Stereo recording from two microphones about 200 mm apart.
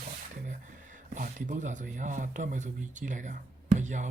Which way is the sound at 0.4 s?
40° right (ahead or behind).